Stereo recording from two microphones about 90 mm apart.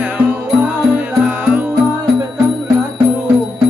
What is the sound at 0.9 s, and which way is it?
Music, 15° right (ahead or behind).